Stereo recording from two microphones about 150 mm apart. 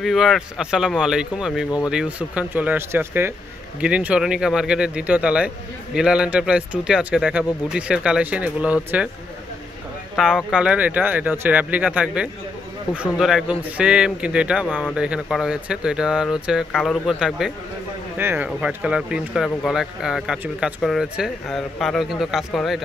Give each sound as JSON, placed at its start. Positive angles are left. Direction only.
{"t": 0.0, "sound": "speech", "side_deg": 0}
{"t": 10.1, "sound": "speech", "side_deg": -5}
{"t": 18.1, "sound": "speech", "side_deg": -15}